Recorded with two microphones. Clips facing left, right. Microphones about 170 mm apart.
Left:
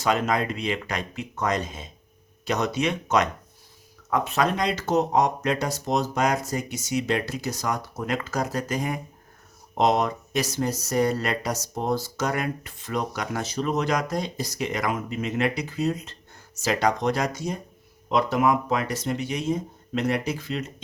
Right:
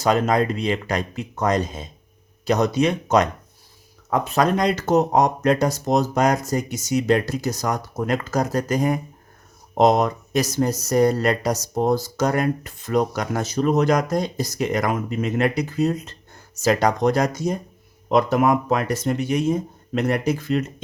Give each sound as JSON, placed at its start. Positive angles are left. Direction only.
{"t": 0.0, "sound": "speech", "side_deg": -40}